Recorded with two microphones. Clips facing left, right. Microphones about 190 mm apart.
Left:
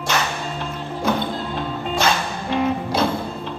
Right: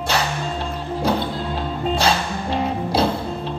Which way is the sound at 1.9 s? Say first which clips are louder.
Left 1 dB; 30° right (ahead or behind).